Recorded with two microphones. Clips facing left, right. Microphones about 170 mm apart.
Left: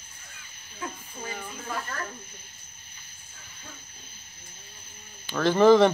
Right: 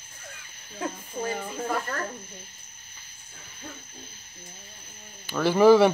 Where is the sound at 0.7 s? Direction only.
45° right (ahead or behind).